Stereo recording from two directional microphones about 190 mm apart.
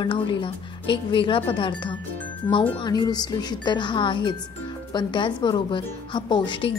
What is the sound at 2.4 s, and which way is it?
A woman's voice, 15° left (ahead or behind).